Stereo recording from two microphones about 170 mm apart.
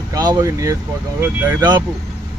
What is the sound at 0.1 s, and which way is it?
Speech, 20° right (ahead or behind).